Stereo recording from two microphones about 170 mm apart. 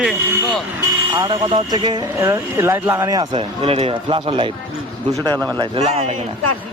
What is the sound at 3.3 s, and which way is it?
Speech, 35° right (ahead or behind).